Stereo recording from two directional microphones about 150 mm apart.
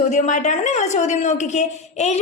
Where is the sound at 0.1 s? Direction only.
55° left (ahead or behind).